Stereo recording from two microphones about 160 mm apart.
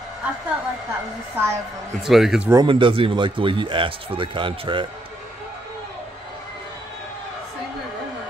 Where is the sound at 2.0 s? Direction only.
Centre (ahead or behind).